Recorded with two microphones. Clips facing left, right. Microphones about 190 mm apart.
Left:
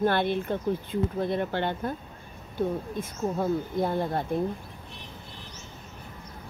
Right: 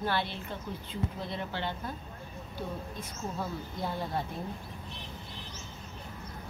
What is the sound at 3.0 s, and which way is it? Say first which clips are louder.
Speech: left 8 dB; 50° left (ahead or behind).